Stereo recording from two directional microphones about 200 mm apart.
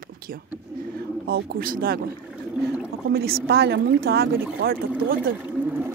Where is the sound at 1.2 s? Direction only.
50° right (ahead or behind).